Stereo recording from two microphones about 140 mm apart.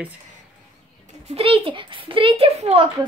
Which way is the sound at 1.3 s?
45° right (ahead or behind).